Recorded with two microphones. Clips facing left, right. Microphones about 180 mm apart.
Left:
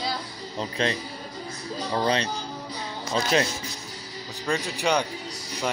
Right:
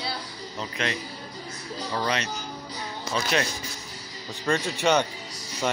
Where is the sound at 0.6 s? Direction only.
30° left (ahead or behind).